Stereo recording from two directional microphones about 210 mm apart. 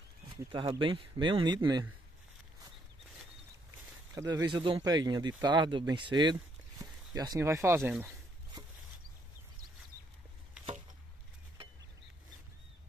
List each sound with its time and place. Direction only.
0.5 s speech: 25° right (ahead or behind)
4.1 s speech: 15° right (ahead or behind)